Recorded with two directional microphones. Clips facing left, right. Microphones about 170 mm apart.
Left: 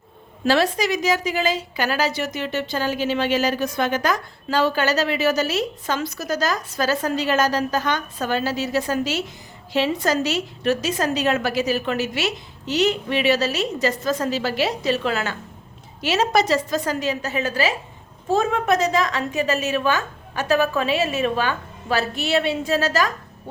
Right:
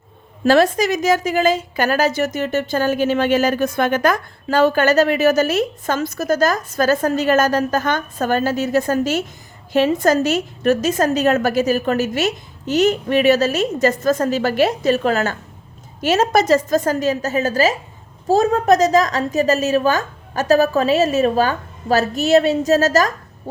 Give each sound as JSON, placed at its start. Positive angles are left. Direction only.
{"t": 0.4, "sound": "a woman's voice", "side_deg": -50}